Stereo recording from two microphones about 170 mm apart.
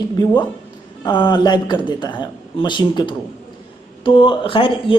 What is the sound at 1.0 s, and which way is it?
A woman's voice, 25° left (ahead or behind).